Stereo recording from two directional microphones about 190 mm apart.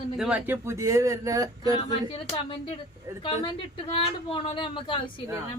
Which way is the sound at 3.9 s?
25° left (ahead or behind).